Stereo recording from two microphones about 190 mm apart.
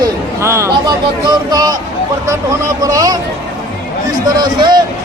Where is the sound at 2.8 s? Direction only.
20° right (ahead or behind).